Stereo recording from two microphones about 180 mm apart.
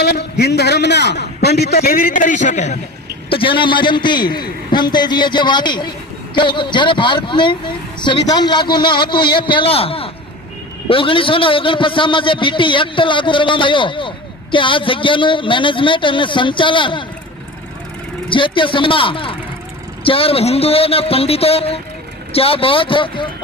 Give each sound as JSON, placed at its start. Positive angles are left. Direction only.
{"t": 0.0, "sound": "a man's voice", "side_deg": 65}
{"t": 3.2, "sound": "a man's voice", "side_deg": 30}
{"t": 18.3, "sound": "a man's voice", "side_deg": 30}